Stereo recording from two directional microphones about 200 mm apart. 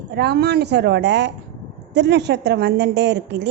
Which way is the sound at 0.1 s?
55° right (ahead or behind).